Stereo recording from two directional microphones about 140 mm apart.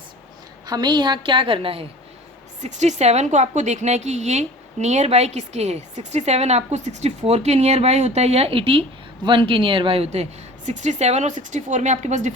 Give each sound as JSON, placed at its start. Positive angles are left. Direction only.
{"t": 0.7, "sound": "a woman's voice", "side_deg": -30}
{"t": 2.6, "sound": "a woman's voice", "side_deg": -55}